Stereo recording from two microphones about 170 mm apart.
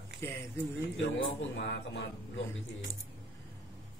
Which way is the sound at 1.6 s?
90° left.